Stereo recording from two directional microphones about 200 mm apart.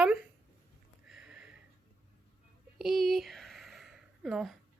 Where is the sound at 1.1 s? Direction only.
5° right (ahead or behind).